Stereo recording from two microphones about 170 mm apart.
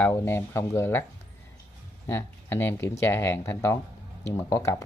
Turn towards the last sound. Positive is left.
turn(degrees=15)  # may be behind; listen again after turning